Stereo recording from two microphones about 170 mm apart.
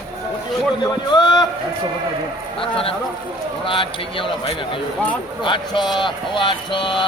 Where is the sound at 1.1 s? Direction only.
25° left (ahead or behind).